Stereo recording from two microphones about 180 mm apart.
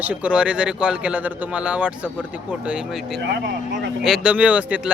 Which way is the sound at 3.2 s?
75° right (ahead or behind).